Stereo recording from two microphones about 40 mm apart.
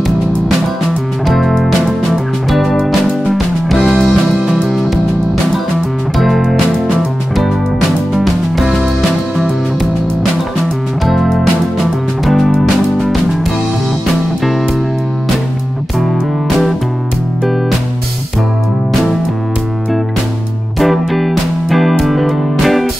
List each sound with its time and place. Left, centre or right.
1.2 s music: centre
6.1 s music: centre
8.1 s music: centre
10.6 s music: centre
20.8 s music: centre